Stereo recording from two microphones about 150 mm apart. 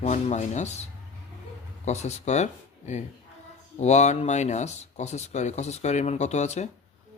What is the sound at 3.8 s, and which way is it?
Speech, 50° left (ahead or behind).